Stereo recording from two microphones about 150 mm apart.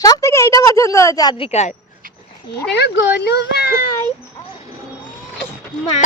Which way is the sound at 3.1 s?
90° left.